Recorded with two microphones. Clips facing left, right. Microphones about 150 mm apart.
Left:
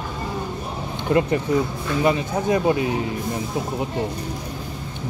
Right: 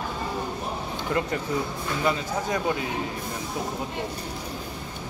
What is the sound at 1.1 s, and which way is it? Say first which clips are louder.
Speech: left 8 dB; 25° left (ahead or behind).